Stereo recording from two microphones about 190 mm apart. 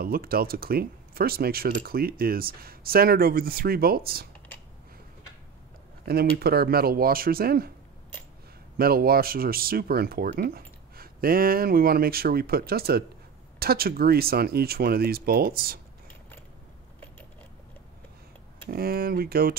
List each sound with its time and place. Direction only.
0.0 s speech: 50° right (ahead or behind)
6.0 s speech: 55° right (ahead or behind)
8.7 s speech: 50° right (ahead or behind)
18.7 s speech: 55° right (ahead or behind)